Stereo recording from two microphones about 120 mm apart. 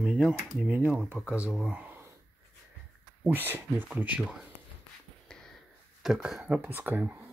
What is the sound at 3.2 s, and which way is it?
Speech, 15° right (ahead or behind).